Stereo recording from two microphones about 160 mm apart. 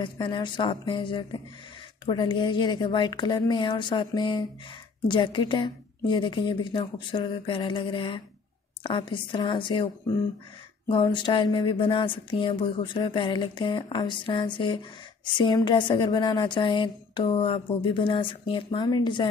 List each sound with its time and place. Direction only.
0.0 s a woman's voice: 30° left (ahead or behind)
10.9 s a woman's voice: 30° left (ahead or behind)